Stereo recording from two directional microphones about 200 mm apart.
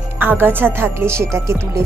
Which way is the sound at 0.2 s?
10° right (ahead or behind).